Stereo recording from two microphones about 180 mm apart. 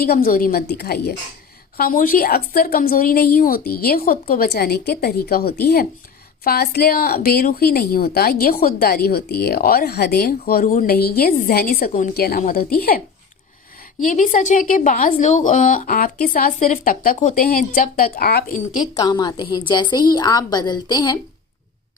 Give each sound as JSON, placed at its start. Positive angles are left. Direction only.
{"t": 0.0, "sound": "a woman's voice", "side_deg": 55}
{"t": 14.0, "sound": "a woman's voice", "side_deg": 45}
{"t": 18.9, "sound": "a woman's voice", "side_deg": 20}